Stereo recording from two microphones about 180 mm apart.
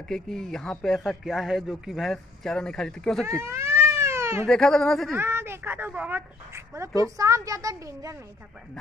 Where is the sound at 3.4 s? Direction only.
15° right (ahead or behind).